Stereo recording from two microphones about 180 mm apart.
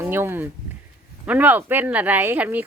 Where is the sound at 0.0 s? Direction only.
15° right (ahead or behind).